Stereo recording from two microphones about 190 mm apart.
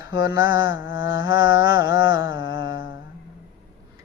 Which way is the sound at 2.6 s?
80° left.